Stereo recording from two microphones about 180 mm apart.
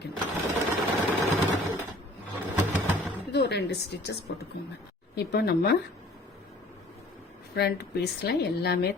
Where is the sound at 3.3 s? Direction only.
65° left (ahead or behind).